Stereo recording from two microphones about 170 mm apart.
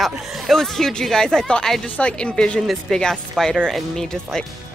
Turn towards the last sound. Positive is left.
turn(degrees=5)  # may be behind; listen again after turning